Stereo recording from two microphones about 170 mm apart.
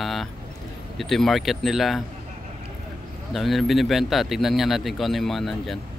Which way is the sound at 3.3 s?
Centre (ahead or behind).